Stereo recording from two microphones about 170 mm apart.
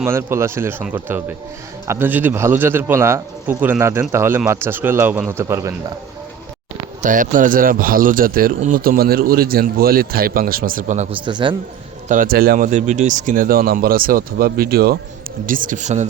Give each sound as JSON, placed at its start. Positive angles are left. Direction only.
{"t": 0.0, "sound": "a man's voice", "side_deg": -15}
{"t": 7.0, "sound": "speech", "side_deg": -50}
{"t": 11.3, "sound": "a man's voice", "side_deg": -25}
{"t": 12.0, "sound": "speech", "side_deg": -50}
{"t": 15.4, "sound": "speech", "side_deg": -55}